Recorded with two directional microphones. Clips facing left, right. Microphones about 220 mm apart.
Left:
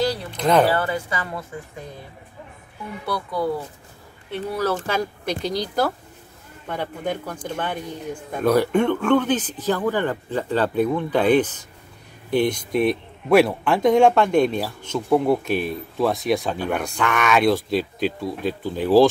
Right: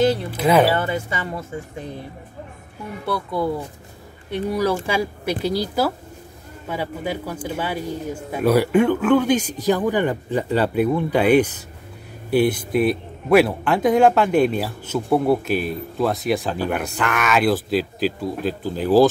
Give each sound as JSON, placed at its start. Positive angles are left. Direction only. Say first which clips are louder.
{"t": 0.3, "sound": "speech", "louder": "right 2 dB", "side_deg": -5}
{"t": 0.7, "sound": "speech", "louder": "right 1 dB", "side_deg": -25}
{"t": 4.3, "sound": "a man's voice", "louder": "right 3 dB", "side_deg": -15}